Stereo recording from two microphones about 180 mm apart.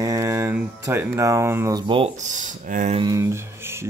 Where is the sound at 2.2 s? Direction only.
45° right (ahead or behind).